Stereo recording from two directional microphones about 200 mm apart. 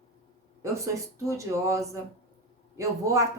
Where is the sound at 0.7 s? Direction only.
15° right (ahead or behind).